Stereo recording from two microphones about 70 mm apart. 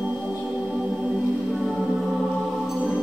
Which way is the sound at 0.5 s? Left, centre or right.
Centre.